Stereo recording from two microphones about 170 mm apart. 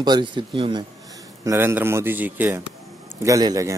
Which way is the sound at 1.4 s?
15° right (ahead or behind).